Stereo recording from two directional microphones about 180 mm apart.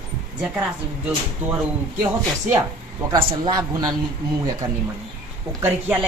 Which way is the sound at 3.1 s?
25° right (ahead or behind).